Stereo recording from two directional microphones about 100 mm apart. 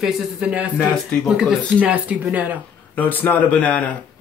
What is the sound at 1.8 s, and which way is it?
Speech, 15° right (ahead or behind).